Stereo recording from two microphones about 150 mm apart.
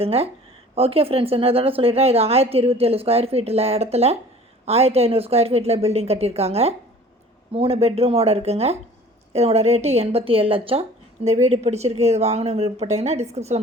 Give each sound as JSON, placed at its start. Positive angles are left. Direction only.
{"t": 0.0, "sound": "speech", "side_deg": -40}